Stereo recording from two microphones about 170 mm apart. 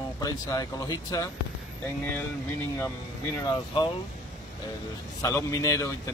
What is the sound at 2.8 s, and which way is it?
Speech, 20° left (ahead or behind).